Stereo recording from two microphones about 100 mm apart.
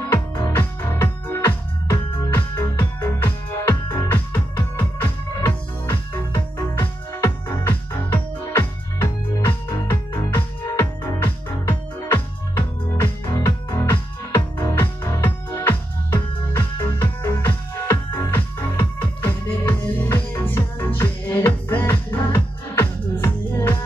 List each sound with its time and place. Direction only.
0.1 s music: 25° left (ahead or behind)
6.7 s music: 25° left (ahead or behind)